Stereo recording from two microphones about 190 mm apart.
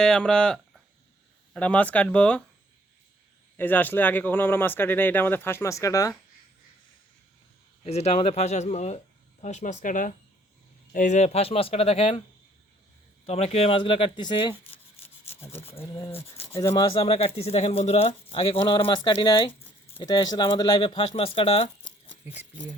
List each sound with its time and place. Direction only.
0.0 s speech: 5° left (ahead or behind)
3.6 s speech: 10° left (ahead or behind)
7.9 s speech: 35° left (ahead or behind)
13.2 s speech: 35° left (ahead or behind)
15.0 s rub: 10° left (ahead or behind)
16.6 s speech: 20° left (ahead or behind)